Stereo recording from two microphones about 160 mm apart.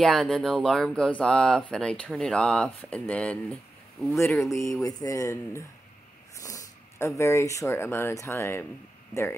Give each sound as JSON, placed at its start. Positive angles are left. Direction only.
{"t": 0.0, "sound": "speech", "side_deg": 5}
{"t": 4.5, "sound": "speech", "side_deg": 20}